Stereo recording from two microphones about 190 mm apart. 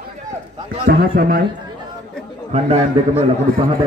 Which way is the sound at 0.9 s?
50° right (ahead or behind).